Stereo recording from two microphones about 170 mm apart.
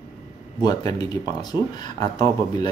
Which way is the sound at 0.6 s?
25° left (ahead or behind).